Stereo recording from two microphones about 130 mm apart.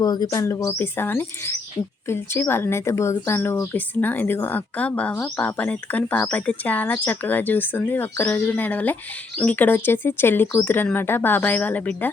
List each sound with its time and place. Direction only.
0.0 s speech: 30° left (ahead or behind); by 12.1 s 10° left (ahead or behind)